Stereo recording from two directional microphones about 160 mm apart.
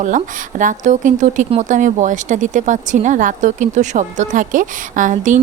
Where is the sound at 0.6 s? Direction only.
50° right (ahead or behind).